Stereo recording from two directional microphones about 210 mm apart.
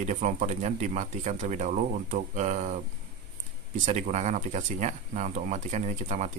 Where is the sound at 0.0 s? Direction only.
35° right (ahead or behind).